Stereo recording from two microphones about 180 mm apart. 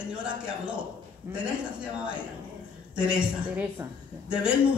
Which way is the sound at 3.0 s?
5° right (ahead or behind).